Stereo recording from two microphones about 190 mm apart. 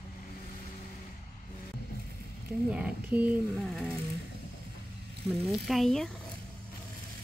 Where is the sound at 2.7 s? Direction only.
10° right (ahead or behind).